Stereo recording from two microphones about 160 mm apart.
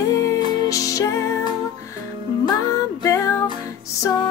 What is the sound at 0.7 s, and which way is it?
Music, 20° left (ahead or behind).